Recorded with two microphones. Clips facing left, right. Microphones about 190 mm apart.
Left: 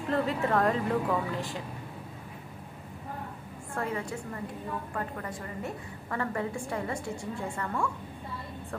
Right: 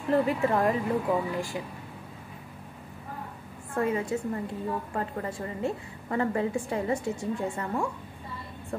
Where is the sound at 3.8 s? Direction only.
20° right (ahead or behind).